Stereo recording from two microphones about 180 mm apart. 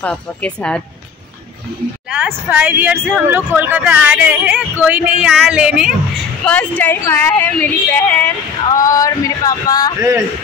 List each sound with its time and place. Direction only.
0.0 s a woman's voice: 5° left (ahead or behind)
2.1 s a woman's voice: 10° right (ahead or behind)
6.4 s a woman's voice: 10° left (ahead or behind)